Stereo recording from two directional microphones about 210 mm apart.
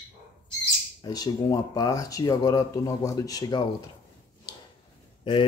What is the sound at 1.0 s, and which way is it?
Speech, 15° left (ahead or behind).